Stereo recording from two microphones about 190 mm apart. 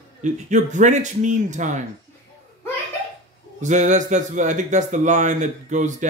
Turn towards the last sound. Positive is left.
turn(degrees=-40)  # may be behind; listen again after turning